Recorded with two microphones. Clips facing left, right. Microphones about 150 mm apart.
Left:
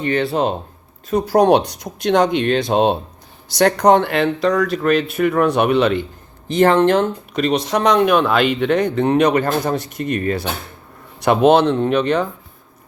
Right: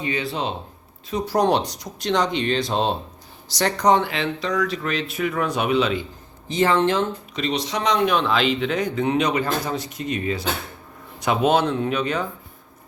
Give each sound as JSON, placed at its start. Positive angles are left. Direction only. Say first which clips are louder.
{"t": 0.0, "sound": "speech", "louder": "left 8 dB", "side_deg": 60}
{"t": 11.8, "sound": "speech", "louder": "left 7 dB", "side_deg": 45}